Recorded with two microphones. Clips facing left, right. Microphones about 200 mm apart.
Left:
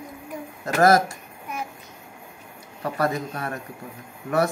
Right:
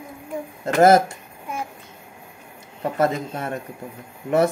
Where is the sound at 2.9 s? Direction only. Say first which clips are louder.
Right 3 dB; 25° right (ahead or behind).